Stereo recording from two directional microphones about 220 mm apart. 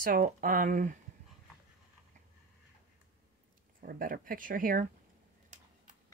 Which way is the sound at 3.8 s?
40° right (ahead or behind).